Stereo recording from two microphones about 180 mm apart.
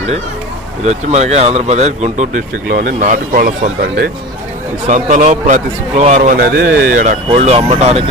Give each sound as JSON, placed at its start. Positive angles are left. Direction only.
{"t": 0.9, "sound": "speech", "side_deg": -40}
{"t": 2.6, "sound": "a man's voice", "side_deg": -55}
{"t": 4.9, "sound": "a man's voice", "side_deg": -40}
{"t": 6.4, "sound": "a man's voice", "side_deg": -60}
{"t": 7.3, "sound": "speech", "side_deg": -35}